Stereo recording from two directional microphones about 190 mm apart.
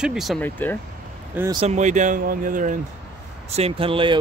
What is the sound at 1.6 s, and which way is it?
Speech, 40° right (ahead or behind).